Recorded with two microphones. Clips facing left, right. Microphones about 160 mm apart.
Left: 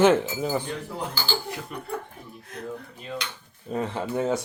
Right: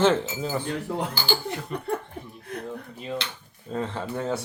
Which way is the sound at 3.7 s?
15° left (ahead or behind).